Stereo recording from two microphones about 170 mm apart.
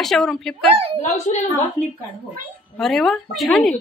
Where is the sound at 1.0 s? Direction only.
45° left (ahead or behind).